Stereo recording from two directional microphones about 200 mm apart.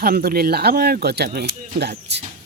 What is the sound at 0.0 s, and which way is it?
Speech, 50° right (ahead or behind).